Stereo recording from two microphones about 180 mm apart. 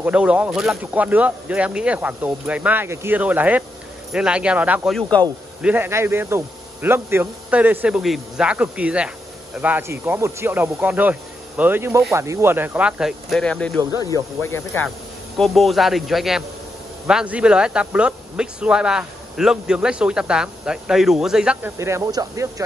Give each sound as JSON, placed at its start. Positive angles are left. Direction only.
{"t": 0.0, "sound": "speech", "side_deg": -5}
{"t": 5.2, "sound": "speech", "side_deg": 10}
{"t": 5.6, "sound": "speech", "side_deg": -10}
{"t": 15.3, "sound": "speech", "side_deg": 0}
{"t": 21.7, "sound": "speech", "side_deg": -15}